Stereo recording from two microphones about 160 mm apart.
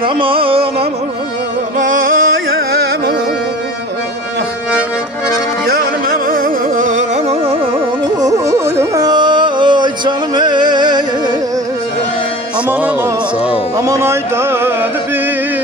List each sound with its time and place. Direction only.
0.0 s carnatic music: 35° right (ahead or behind)
1.8 s music: 55° right (ahead or behind)
5.7 s music: 65° right (ahead or behind)
8.2 s carnatic music: 20° right (ahead or behind)
13.7 s music: 20° right (ahead or behind)